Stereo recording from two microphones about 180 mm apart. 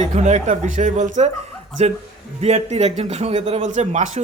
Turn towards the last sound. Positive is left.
turn(degrees=-40)  # may be behind; listen again after turning